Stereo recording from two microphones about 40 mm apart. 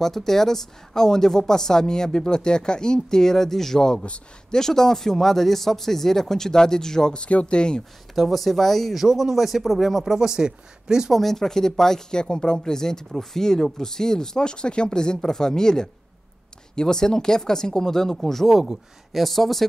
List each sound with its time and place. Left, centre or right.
0.0 s speech: centre
7.2 s speech: left
8.1 s speech: centre
9.0 s speech: centre
10.1 s speech: centre
11.1 s speech: centre
12.1 s speech: left; by 19.6 s centre